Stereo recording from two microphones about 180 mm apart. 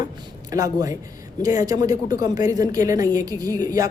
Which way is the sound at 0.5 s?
20° right (ahead or behind).